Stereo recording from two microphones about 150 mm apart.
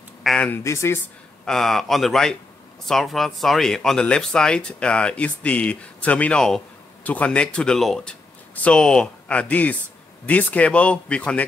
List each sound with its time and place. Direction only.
0.2 s speech: centre (ahead or behind)
0.5 s speech: 20° left (ahead or behind)
1.4 s speech: 5° left (ahead or behind)